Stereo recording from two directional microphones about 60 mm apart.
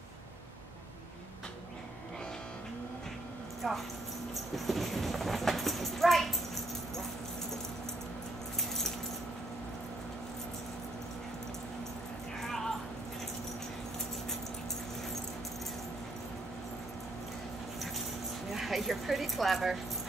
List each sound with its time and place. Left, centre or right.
3.6 s speech: centre
12.4 s dog: centre
18.5 s dog: centre